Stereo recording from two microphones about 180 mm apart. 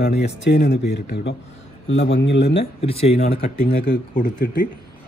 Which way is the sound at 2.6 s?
35° left (ahead or behind).